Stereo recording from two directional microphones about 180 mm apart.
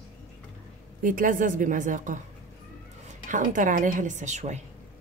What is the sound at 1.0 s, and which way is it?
A woman's voice, 50° right (ahead or behind).